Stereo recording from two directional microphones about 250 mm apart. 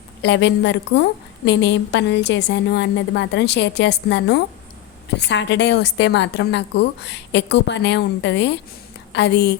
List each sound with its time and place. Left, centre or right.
0.2 s a woman's voice: left